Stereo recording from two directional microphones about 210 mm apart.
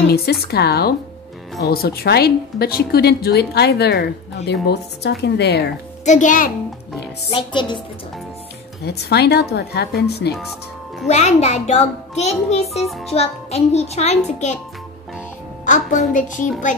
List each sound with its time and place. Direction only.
0.1 s a woman's voice: 50° left (ahead or behind)
6.0 s a child's voice: 35° left (ahead or behind)
7.2 s speech: 25° left (ahead or behind)
8.8 s a woman's voice: 50° left (ahead or behind)
11.1 s a child's voice: 30° left (ahead or behind)
15.6 s a child's voice: 35° left (ahead or behind)